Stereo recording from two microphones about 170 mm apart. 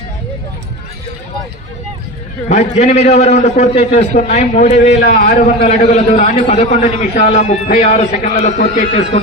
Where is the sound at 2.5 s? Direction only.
40° left (ahead or behind).